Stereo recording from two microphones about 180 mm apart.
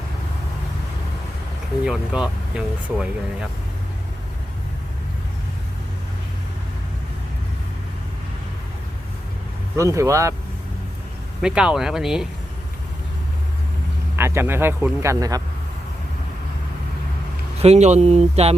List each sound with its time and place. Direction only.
1.8 s speech: 5° right (ahead or behind)
9.7 s speech: 15° right (ahead or behind)
11.4 s speech: 5° right (ahead or behind)
14.2 s speech: 15° right (ahead or behind)
17.6 s speech: 35° right (ahead or behind)